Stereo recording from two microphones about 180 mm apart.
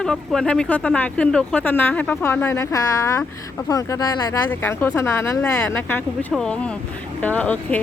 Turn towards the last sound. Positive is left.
turn(degrees=10)  # may be behind; listen again after turning